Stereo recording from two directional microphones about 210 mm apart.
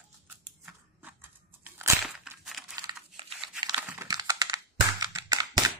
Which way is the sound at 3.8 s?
10° right (ahead or behind).